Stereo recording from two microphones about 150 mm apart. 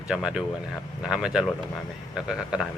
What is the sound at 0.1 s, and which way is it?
Speech, 5° right (ahead or behind).